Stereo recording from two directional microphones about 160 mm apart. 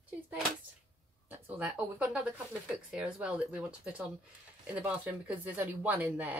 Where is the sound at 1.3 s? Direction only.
10° right (ahead or behind).